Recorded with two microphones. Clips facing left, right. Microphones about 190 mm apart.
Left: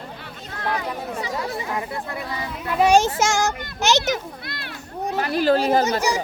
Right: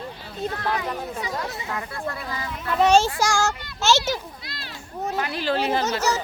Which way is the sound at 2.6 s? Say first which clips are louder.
Left 1 dB; 10° left (ahead or behind).